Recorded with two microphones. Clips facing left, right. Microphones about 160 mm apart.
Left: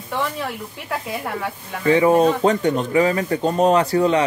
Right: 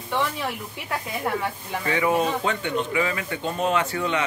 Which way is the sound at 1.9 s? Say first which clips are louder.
Left 8 dB; 35° left (ahead or behind).